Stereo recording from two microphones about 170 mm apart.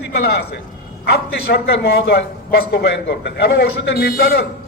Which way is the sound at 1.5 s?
65° left (ahead or behind).